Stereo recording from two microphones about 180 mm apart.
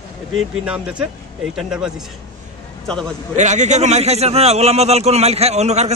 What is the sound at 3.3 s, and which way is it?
A man's voice, 40° right (ahead or behind).